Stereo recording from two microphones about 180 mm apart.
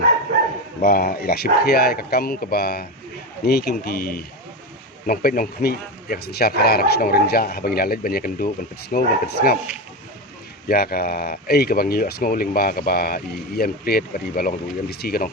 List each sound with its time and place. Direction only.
0.8 s speech: 55° left (ahead or behind)
10.7 s speech: 60° left (ahead or behind)